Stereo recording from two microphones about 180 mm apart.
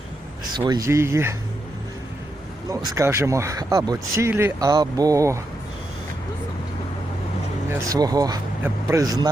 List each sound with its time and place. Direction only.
0.5 s speech: 25° right (ahead or behind)
2.6 s speech: 15° right (ahead or behind)
7.7 s speech: 20° right (ahead or behind)